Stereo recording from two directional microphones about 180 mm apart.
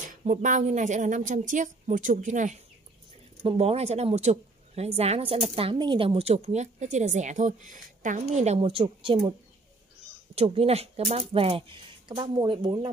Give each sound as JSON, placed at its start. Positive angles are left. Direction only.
{"t": 0.2, "sound": "a woman's voice", "side_deg": -45}
{"t": 10.3, "sound": "a woman's voice", "side_deg": -35}